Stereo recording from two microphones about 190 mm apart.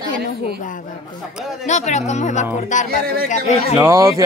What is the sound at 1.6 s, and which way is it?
Speech, 35° left (ahead or behind).